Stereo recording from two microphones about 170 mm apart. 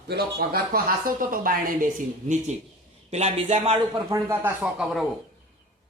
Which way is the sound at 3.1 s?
40° right (ahead or behind).